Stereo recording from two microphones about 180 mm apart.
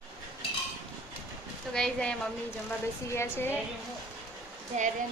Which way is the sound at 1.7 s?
5° left (ahead or behind).